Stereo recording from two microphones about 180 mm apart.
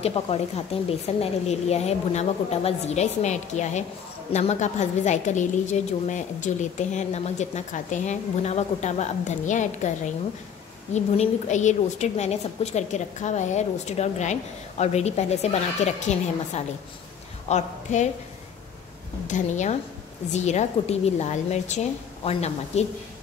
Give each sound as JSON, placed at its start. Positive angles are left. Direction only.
{"t": 0.0, "sound": "a woman's voice", "side_deg": 35}
{"t": 19.2, "sound": "a woman's voice", "side_deg": 40}